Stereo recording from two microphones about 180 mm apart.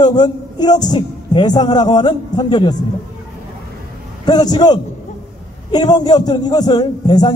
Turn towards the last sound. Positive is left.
turn(degrees=25)  # may be behind; listen again after turning